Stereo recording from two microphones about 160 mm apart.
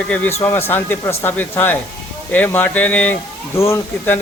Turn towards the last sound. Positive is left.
turn(degrees=15)  # may be behind; listen again after turning